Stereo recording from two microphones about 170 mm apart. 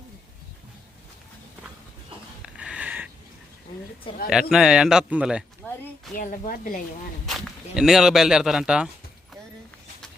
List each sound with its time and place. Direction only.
2.4 s a sound: 5° right (ahead or behind)
4.3 s speech: 5° right (ahead or behind)
6.1 s speech: 55° left (ahead or behind)
7.3 s speech: centre (ahead or behind)